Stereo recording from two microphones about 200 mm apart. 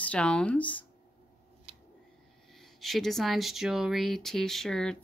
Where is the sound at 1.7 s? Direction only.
30° right (ahead or behind).